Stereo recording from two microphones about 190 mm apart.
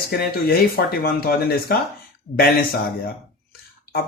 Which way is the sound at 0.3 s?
50° left (ahead or behind).